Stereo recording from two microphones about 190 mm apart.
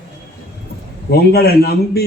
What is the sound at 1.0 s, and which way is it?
Speech, 55° left (ahead or behind).